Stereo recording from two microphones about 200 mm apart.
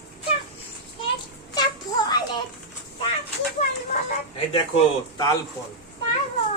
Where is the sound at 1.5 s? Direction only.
20° left (ahead or behind).